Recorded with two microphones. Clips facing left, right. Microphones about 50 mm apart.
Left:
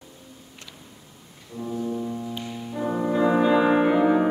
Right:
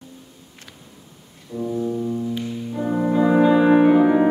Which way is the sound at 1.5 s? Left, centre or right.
Right.